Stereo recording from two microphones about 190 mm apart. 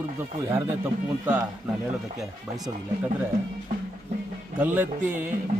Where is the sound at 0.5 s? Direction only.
10° right (ahead or behind).